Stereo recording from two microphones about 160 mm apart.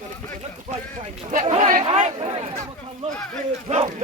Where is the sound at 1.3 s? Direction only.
45° right (ahead or behind).